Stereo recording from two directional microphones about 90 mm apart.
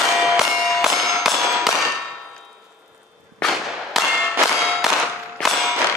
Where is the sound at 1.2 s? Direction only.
Centre (ahead or behind).